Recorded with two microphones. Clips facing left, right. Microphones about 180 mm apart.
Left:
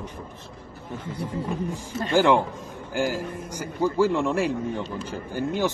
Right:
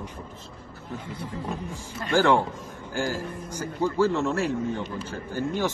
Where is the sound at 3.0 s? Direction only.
15° left (ahead or behind).